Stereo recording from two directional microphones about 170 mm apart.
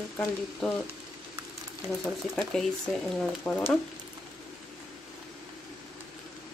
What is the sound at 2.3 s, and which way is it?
Speech, 5° left (ahead or behind).